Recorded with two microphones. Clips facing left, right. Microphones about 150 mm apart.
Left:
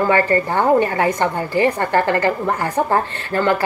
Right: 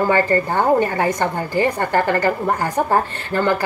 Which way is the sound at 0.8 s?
20° left (ahead or behind).